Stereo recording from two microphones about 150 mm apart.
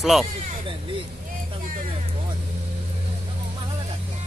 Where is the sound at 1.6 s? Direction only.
60° right (ahead or behind).